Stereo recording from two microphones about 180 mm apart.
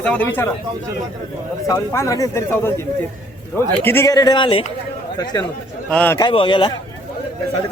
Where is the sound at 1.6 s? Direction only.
20° left (ahead or behind).